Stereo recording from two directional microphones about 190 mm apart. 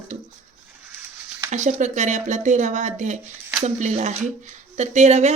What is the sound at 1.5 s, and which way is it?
Speech, 40° right (ahead or behind).